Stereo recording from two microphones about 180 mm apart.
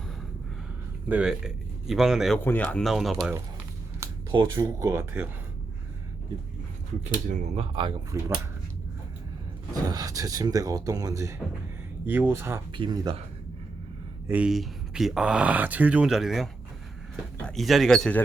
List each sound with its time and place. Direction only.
1.0 s speech: 5° right (ahead or behind)
2.4 s speech: 10° left (ahead or behind)
4.0 s a sound: 25° right (ahead or behind)
4.5 s speech: 15° right (ahead or behind)
7.3 s speech: 40° right (ahead or behind)
8.1 s speech: 15° right (ahead or behind)
9.9 s speech: 20° right (ahead or behind)
12.7 s speech: 25° right (ahead or behind)
14.3 s speech: 5° right (ahead or behind)